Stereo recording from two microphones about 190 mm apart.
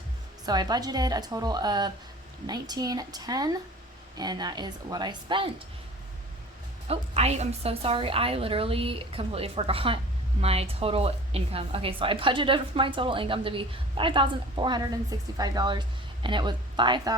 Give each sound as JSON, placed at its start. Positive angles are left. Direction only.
{"t": 0.4, "sound": "a woman's voice", "side_deg": -20}
{"t": 6.8, "sound": "a woman's voice", "side_deg": -35}